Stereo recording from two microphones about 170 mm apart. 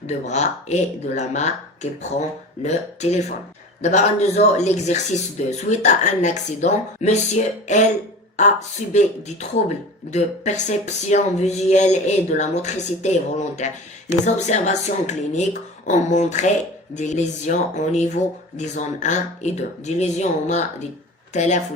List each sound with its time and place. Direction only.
0.1 s speech: 40° left (ahead or behind)